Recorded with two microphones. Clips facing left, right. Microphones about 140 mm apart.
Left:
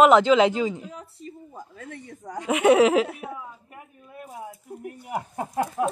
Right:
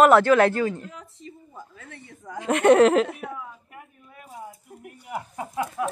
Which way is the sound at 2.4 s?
5° left (ahead or behind).